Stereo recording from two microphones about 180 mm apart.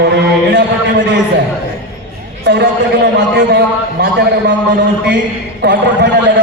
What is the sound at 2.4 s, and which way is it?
A man's voice, 70° right (ahead or behind).